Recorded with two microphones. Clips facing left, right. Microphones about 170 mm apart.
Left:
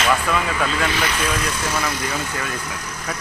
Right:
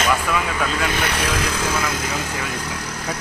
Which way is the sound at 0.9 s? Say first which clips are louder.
Even; 65° right (ahead or behind).